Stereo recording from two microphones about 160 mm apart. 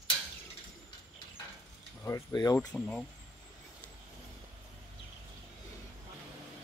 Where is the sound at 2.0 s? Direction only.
15° left (ahead or behind).